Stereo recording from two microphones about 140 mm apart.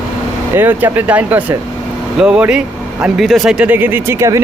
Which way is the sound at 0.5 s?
15° right (ahead or behind).